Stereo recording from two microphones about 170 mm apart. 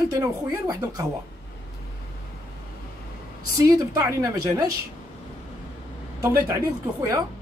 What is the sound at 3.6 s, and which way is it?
Speech, 20° right (ahead or behind).